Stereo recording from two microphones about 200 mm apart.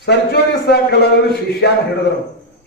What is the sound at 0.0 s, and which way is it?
A man's voice, 55° left (ahead or behind).